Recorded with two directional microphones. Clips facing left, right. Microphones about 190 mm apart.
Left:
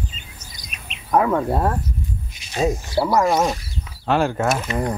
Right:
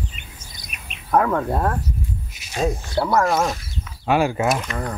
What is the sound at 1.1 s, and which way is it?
Speech, 5° left (ahead or behind).